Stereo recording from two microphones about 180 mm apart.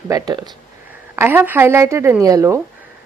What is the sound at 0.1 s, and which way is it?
A woman's voice, 20° right (ahead or behind).